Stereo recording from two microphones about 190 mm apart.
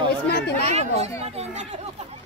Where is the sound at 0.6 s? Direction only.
35° right (ahead or behind).